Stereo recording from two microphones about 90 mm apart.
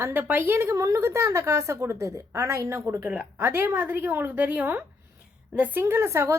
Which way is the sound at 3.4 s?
25° right (ahead or behind).